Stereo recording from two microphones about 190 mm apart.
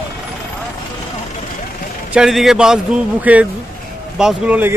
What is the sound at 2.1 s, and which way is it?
A man's voice, 5° right (ahead or behind).